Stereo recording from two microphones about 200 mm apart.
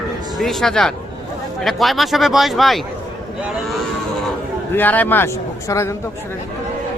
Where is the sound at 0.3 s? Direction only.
Centre (ahead or behind).